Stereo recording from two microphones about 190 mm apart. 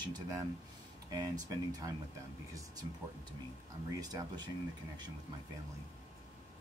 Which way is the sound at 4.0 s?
20° right (ahead or behind).